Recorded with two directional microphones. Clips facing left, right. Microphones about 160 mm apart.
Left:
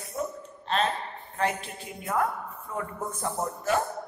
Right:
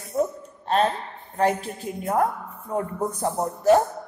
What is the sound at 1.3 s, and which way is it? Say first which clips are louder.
A man's voice: right 7 dB; 40° right (ahead or behind).